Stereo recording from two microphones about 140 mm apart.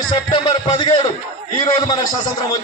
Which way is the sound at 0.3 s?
30° left (ahead or behind).